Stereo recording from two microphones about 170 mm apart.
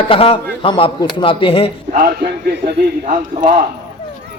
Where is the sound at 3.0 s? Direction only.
45° right (ahead or behind).